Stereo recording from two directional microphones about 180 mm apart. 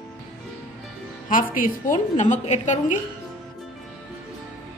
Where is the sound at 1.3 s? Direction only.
50° left (ahead or behind).